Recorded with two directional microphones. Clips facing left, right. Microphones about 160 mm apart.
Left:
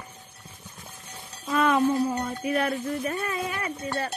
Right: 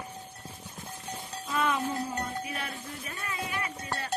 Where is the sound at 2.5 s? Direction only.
60° left (ahead or behind).